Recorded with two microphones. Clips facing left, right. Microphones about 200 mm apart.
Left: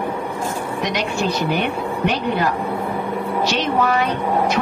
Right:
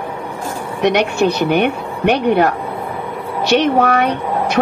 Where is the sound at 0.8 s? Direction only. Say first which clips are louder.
Right 10 dB; 65° right (ahead or behind).